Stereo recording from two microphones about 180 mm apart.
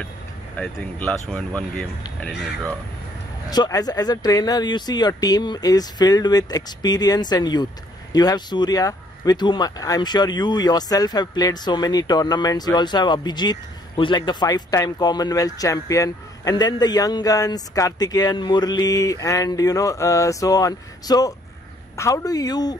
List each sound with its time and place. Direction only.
0.6 s speech: 5° left (ahead or behind)
3.4 s speech: 20° left (ahead or behind)